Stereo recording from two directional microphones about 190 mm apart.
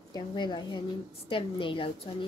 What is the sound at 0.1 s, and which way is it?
Speech, 25° left (ahead or behind).